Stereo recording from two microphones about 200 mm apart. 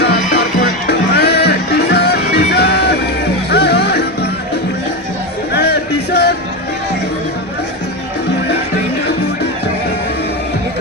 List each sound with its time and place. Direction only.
0.0 s music: 55° left (ahead or behind)
5.5 s music: 55° left (ahead or behind)